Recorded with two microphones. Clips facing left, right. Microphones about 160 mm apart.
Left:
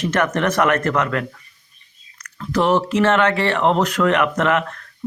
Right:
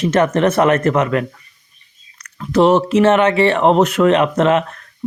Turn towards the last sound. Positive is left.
turn(degrees=-20)  # may be behind; listen again after turning